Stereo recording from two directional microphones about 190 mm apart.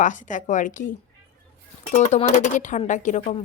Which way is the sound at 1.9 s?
40° left (ahead or behind).